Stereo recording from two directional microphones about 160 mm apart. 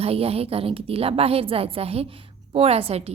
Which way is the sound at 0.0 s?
40° right (ahead or behind).